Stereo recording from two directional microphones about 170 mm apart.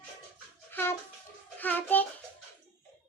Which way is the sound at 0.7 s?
15° left (ahead or behind).